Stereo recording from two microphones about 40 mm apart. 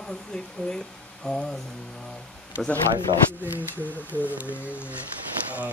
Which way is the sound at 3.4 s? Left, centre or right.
Right.